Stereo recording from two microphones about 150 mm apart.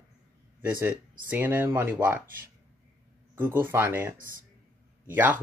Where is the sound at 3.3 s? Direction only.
15° right (ahead or behind).